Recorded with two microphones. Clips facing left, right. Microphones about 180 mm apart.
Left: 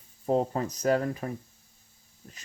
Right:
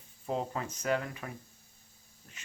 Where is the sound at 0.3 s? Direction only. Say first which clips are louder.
Left 8 dB; 40° left (ahead or behind).